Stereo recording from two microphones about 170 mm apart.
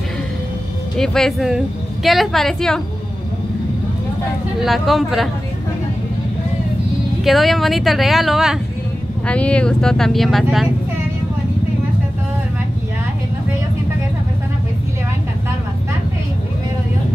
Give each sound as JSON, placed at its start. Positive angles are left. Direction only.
{"t": 0.9, "sound": "speech", "side_deg": 5}
{"t": 4.6, "sound": "speech", "side_deg": 0}
{"t": 7.2, "sound": "speech", "side_deg": 0}